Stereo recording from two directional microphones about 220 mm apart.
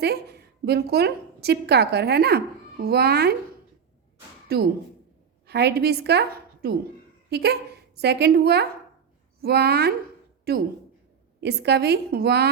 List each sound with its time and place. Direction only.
0.0 s a woman's voice: 50° right (ahead or behind)
5.5 s a woman's voice: 50° right (ahead or behind)